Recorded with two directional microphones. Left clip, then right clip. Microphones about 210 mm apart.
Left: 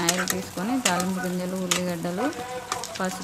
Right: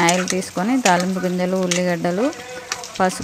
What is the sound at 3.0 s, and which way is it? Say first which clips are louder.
Frying: right 13 dB; 25° right (ahead or behind).